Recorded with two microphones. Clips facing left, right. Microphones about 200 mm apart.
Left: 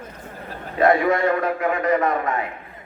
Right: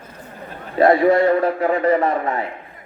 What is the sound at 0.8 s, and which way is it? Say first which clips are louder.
A man's voice: right 4 dB; 35° right (ahead or behind).